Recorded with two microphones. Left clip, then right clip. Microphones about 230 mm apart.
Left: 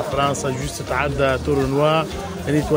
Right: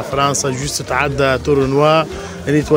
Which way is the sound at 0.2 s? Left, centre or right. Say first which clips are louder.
Right 7 dB; right.